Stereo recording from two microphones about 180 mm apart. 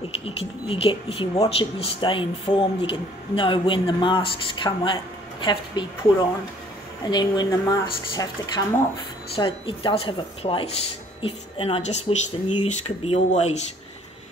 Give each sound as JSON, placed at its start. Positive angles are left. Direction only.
{"t": 0.2, "sound": "speech", "side_deg": 30}
{"t": 7.1, "sound": "speech", "side_deg": 25}